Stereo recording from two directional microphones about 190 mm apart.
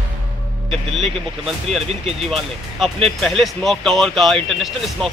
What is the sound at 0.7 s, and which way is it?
Speech, centre (ahead or behind).